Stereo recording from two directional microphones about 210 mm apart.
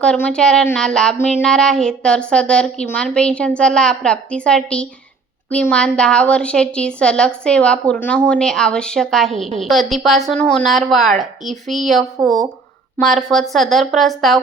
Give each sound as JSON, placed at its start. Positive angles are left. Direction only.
{"t": 0.0, "sound": "speech", "side_deg": 5}